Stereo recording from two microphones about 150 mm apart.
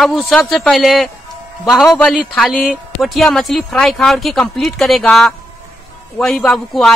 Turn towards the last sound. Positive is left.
turn(degrees=5)  # may be behind; listen again after turning